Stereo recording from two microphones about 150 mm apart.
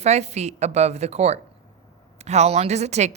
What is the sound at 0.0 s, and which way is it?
Speech, 45° right (ahead or behind).